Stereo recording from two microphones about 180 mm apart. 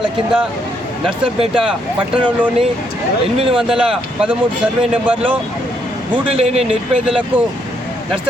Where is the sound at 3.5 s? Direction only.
5° right (ahead or behind).